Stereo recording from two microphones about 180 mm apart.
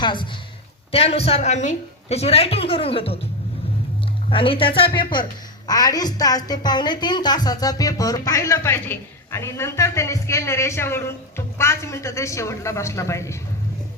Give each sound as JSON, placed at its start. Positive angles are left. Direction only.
{"t": 0.0, "sound": "a woman's voice", "side_deg": 25}
{"t": 4.3, "sound": "a woman's voice", "side_deg": 30}